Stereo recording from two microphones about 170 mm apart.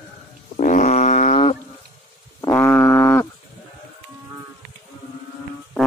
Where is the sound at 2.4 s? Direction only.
15° left (ahead or behind).